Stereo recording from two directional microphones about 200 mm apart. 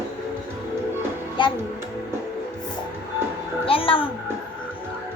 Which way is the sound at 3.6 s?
25° left (ahead or behind).